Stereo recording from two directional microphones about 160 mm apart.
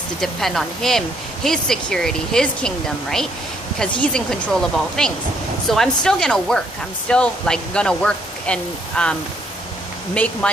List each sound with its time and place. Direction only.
0.2 s speech: centre (ahead or behind)
10.1 s speech: 5° left (ahead or behind)